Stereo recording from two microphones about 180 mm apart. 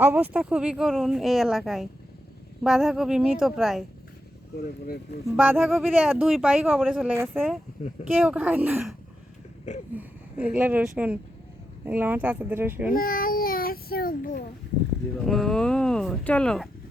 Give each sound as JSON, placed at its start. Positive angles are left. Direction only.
{"t": 0.0, "sound": "speech", "side_deg": -10}
{"t": 5.4, "sound": "speech", "side_deg": -5}
{"t": 12.9, "sound": "child singing", "side_deg": 55}
{"t": 15.2, "sound": "speech", "side_deg": 0}